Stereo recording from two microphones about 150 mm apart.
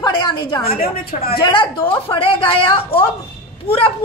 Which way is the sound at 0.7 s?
80° left.